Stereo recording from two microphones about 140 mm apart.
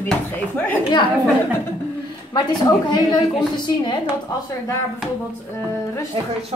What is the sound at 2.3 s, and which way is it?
A woman's voice, 30° left (ahead or behind).